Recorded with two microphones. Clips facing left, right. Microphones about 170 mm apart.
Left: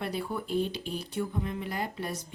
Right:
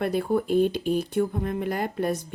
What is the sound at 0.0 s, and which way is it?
Speech, 55° right (ahead or behind).